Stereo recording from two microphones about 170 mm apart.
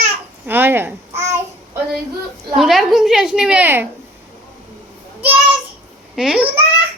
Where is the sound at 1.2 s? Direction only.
15° right (ahead or behind).